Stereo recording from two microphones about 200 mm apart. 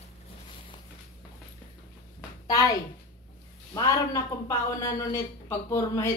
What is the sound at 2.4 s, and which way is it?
A child's voice, 15° left (ahead or behind).